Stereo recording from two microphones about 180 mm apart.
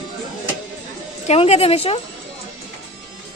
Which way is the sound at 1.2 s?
35° left (ahead or behind).